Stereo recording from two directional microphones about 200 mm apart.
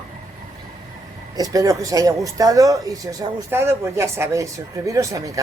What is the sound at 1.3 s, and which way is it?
A man's voice, 15° right (ahead or behind).